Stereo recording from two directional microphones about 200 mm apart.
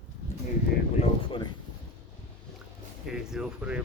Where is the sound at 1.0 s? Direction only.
25° left (ahead or behind).